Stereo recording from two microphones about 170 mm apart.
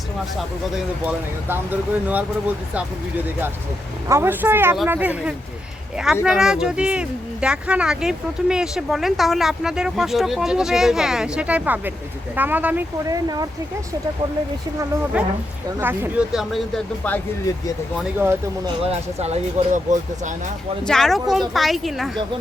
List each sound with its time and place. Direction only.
0.3 s speech: centre (ahead or behind)
13.2 s speech: 25° right (ahead or behind)
15.8 s speech: 10° right (ahead or behind); by 17.2 s 5° left (ahead or behind)
18.2 s speech: 15° right (ahead or behind)
18.9 s speech: 40° right (ahead or behind)
20.8 s speech: 5° left (ahead or behind)